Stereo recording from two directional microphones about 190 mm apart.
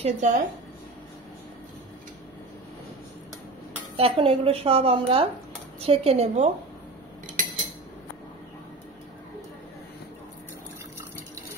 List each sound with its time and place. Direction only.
0.0 s speech: 40° right (ahead or behind)
3.9 s a woman's voice: 30° right (ahead or behind)
7.4 s cutlery: 45° right (ahead or behind)